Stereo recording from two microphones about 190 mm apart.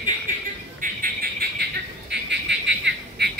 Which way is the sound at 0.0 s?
45° right (ahead or behind).